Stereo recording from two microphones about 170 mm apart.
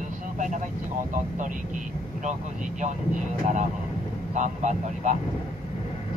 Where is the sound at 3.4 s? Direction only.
45° right (ahead or behind).